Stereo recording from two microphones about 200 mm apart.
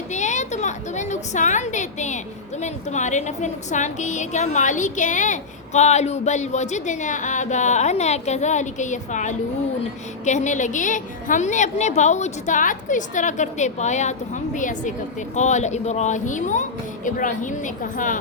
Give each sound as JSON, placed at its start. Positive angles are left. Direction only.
{"t": 0.1, "sound": "a woman's voice", "side_deg": 35}